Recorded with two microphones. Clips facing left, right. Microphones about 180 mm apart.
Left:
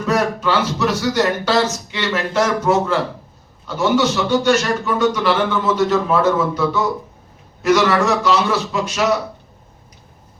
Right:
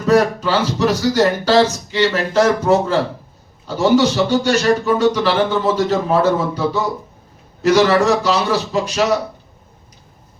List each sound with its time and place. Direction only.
0.1 s a man's voice: 35° right (ahead or behind)
7.7 s a man's voice: 35° right (ahead or behind)